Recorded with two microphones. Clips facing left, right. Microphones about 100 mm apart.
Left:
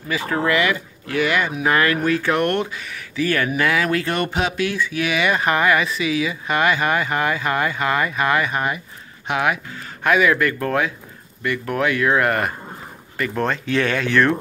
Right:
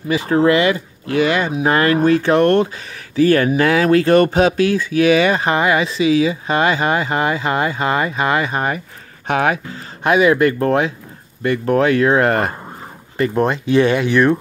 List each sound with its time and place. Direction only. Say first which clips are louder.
0.1 s speech: right 6 dB; 25° right (ahead or behind); by 9.6 s 40° right (ahead or behind)
10.0 s speech: right 4 dB; 25° right (ahead or behind)
13.2 s speech: right 6 dB; 20° right (ahead or behind)